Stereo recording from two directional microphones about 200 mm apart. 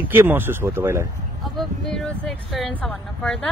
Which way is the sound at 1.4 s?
Centre (ahead or behind).